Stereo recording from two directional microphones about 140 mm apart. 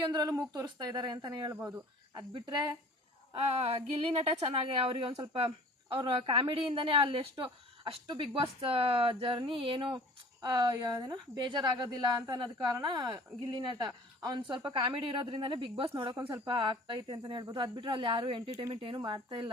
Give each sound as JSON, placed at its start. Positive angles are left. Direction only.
{"t": 0.1, "sound": "speech", "side_deg": -25}
{"t": 2.3, "sound": "a woman's voice", "side_deg": -30}
{"t": 3.3, "sound": "a woman's voice", "side_deg": -45}